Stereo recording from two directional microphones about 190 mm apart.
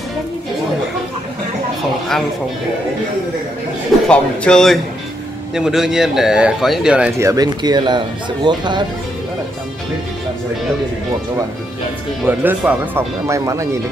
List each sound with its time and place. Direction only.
4.1 s speech: 5° left (ahead or behind); by 8.8 s 25° right (ahead or behind)
12.3 s speech: 10° right (ahead or behind)